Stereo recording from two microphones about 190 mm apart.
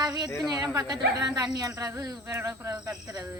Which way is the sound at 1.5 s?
15° right (ahead or behind).